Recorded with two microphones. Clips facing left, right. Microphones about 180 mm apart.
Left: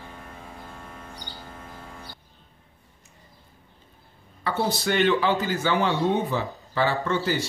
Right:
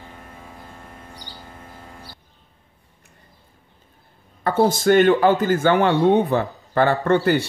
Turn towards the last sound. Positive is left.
turn(degrees=-55)  # may be behind; listen again after turning